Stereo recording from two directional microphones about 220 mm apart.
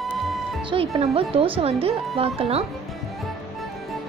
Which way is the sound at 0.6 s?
25° right (ahead or behind).